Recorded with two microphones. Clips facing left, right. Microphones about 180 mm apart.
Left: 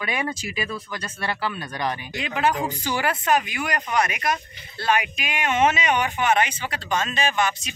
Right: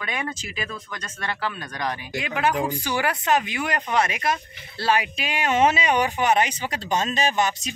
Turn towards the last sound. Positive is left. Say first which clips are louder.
# right 1 dB
turn(degrees=-40)  # may be behind; listen again after turning